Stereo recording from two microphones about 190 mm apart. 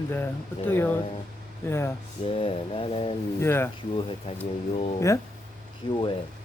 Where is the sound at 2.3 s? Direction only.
30° left (ahead or behind).